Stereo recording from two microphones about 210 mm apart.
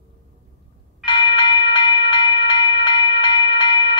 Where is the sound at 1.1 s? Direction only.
20° left (ahead or behind).